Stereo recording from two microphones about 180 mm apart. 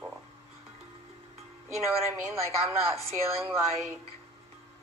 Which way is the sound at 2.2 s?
15° right (ahead or behind).